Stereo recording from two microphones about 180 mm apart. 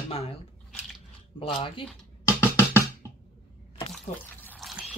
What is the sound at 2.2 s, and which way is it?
Music, 15° left (ahead or behind).